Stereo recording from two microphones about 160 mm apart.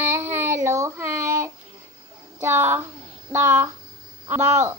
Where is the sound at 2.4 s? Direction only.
15° right (ahead or behind).